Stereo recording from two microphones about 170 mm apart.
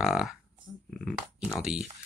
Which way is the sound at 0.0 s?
5° right (ahead or behind).